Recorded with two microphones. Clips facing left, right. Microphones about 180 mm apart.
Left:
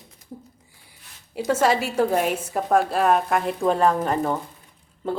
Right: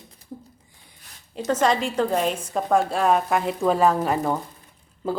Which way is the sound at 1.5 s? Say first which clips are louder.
Left 1 dB; 10° left (ahead or behind).